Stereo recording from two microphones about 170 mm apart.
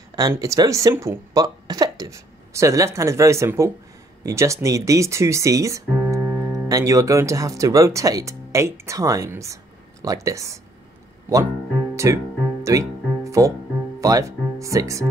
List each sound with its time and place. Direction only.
0.1 s speech: 20° right (ahead or behind)
11.9 s music: 15° right (ahead or behind)
14.0 s speech: 20° right (ahead or behind)